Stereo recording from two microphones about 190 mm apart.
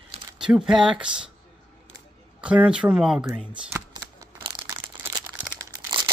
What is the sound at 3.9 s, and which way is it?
Crumpling, 20° right (ahead or behind).